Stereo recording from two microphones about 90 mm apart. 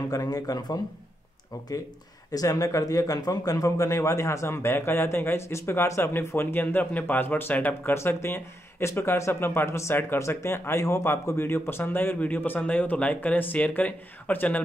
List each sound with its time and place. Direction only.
0.1 s a man's voice: 45° left (ahead or behind)
2.3 s speech: 40° left (ahead or behind); by 14.6 s 20° left (ahead or behind)